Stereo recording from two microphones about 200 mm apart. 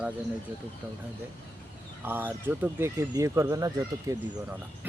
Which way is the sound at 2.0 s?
10° right (ahead or behind).